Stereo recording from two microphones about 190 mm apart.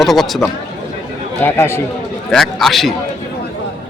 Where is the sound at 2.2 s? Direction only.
Centre (ahead or behind).